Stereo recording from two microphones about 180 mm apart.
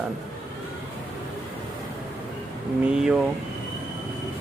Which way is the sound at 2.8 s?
5° right (ahead or behind).